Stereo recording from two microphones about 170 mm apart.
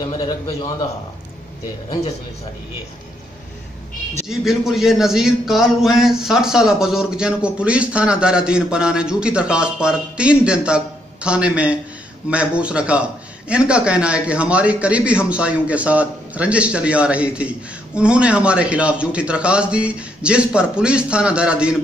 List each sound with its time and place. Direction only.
0.1 s a man's voice: 20° left (ahead or behind)
4.3 s a man's voice: centre (ahead or behind)